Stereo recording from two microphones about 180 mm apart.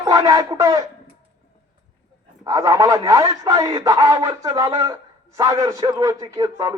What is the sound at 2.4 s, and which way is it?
A man's voice, 20° right (ahead or behind).